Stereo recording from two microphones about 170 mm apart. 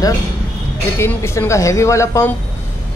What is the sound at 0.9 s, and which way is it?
A man's voice, 15° left (ahead or behind).